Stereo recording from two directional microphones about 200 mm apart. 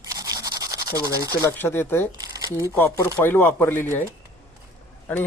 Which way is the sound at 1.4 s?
10° left (ahead or behind).